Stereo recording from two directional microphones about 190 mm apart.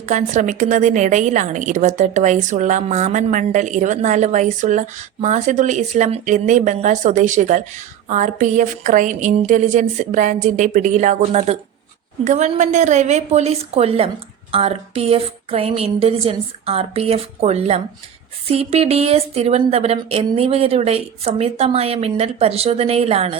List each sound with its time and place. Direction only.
0.1 s a woman's voice: 40° right (ahead or behind)